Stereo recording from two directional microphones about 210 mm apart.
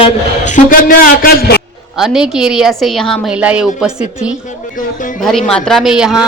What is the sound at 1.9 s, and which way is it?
A man's voice, centre (ahead or behind).